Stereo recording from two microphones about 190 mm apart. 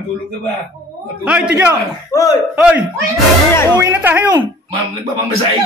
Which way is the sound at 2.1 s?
20° left (ahead or behind).